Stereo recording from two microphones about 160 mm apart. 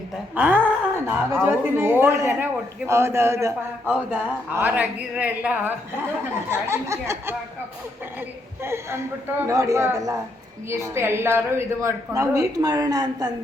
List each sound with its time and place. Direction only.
0.3 s speech: 10° right (ahead or behind)
8.6 s a woman's voice: 15° right (ahead or behind)